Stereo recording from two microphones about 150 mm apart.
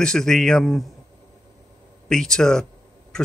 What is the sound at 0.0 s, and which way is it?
Speech, 5° left (ahead or behind).